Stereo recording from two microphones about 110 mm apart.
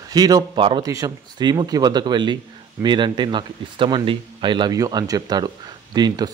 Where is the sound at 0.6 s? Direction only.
50° right (ahead or behind).